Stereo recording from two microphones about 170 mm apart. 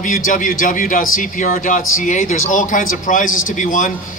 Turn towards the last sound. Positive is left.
turn(degrees=50)  # may be behind; listen again after turning